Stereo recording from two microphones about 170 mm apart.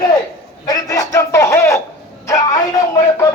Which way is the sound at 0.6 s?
20° left (ahead or behind).